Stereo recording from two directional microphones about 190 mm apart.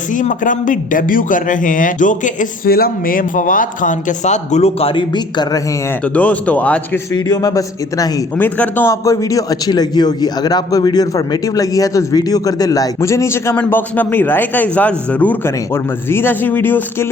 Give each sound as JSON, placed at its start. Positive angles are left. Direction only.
{"t": 0.1, "sound": "a man's voice", "side_deg": 40}
{"t": 6.1, "sound": "a man's voice", "side_deg": 5}
{"t": 7.1, "sound": "a man's voice", "side_deg": 20}